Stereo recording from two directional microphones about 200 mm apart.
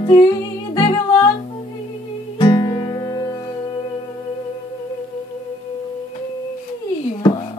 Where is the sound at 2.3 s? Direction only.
20° left (ahead or behind).